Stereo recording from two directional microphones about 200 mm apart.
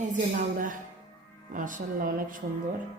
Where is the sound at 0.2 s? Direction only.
40° right (ahead or behind).